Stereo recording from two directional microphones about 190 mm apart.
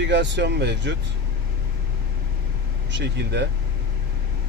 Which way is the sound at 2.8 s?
65° right (ahead or behind).